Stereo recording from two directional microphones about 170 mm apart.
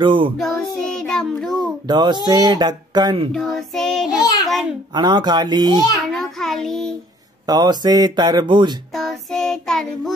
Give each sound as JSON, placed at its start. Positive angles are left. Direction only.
{"t": 0.0, "sound": "speech", "side_deg": -30}
{"t": 0.4, "sound": "child singing", "side_deg": 5}
{"t": 1.9, "sound": "speech", "side_deg": -25}
{"t": 3.3, "sound": "child singing", "side_deg": 0}
{"t": 4.9, "sound": "speech", "side_deg": -25}
{"t": 6.0, "sound": "child singing", "side_deg": 0}
{"t": 7.4, "sound": "speech", "side_deg": -25}
{"t": 8.9, "sound": "child singing", "side_deg": 0}